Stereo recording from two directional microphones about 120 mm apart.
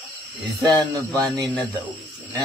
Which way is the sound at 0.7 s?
30° right (ahead or behind).